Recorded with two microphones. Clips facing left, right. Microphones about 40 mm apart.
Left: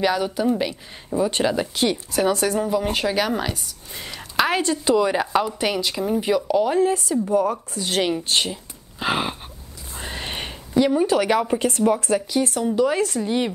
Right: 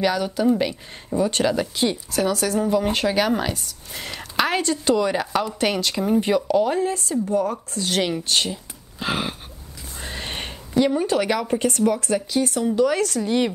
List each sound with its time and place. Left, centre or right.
0.0 s speech: centre
1.1 s speech: centre
4.2 s a sound: centre
4.6 s a woman's voice: left
5.5 s speech: centre
6.0 s speech: centre
6.9 s a woman's voice: left
9.9 s a sound: centre
10.8 s speech: centre
11.2 s speech: centre
11.6 s speech: left
12.3 s speech: centre
12.7 s speech: centre